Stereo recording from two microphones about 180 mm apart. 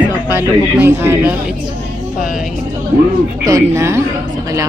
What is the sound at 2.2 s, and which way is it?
Speech, centre (ahead or behind).